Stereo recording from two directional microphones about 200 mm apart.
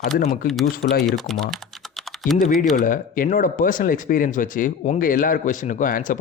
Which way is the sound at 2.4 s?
40° left (ahead or behind).